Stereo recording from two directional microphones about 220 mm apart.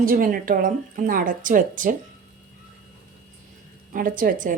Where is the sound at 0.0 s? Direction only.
40° right (ahead or behind).